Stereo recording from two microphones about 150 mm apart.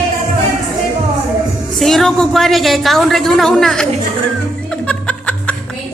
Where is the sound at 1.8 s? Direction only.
Centre (ahead or behind).